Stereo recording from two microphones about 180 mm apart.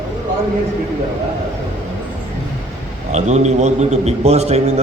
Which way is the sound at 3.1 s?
40° right (ahead or behind).